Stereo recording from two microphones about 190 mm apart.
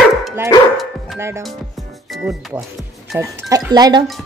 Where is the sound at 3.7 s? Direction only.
20° right (ahead or behind).